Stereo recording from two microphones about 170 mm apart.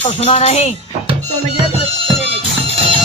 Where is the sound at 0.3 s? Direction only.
35° left (ahead or behind).